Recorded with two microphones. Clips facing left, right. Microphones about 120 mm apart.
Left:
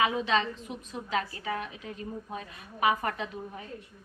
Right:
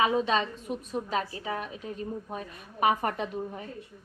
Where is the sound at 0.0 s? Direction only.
40° right (ahead or behind).